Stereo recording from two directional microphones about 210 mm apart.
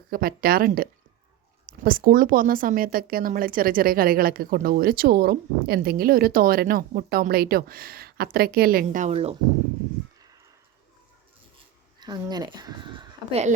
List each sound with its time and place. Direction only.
0.1 s speech: 45° right (ahead or behind)
11.9 s speech: 20° right (ahead or behind)